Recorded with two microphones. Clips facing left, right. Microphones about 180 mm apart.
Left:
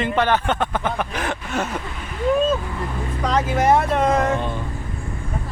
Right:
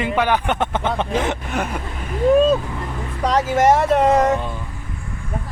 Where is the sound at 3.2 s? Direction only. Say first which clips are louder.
Right 3 dB; 40° right (ahead or behind).